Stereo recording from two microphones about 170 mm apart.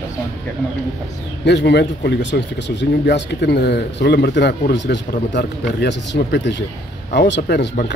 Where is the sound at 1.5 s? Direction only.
85° left.